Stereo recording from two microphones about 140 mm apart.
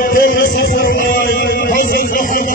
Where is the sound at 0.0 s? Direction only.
80° left.